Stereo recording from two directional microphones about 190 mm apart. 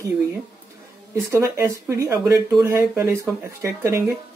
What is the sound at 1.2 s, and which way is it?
Speech, 15° right (ahead or behind).